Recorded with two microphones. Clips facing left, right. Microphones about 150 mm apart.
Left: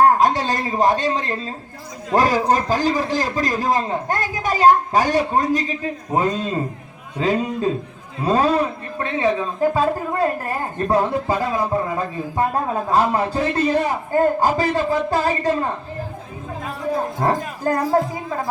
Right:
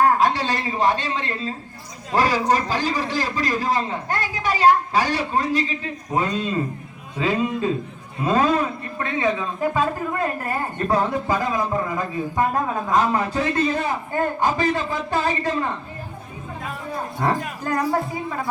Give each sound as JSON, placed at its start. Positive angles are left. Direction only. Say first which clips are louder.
{"t": 0.0, "sound": "a man's voice", "louder": "left 3 dB", "side_deg": 40}
{"t": 17.2, "sound": "a man's voice", "louder": "left 2 dB", "side_deg": 40}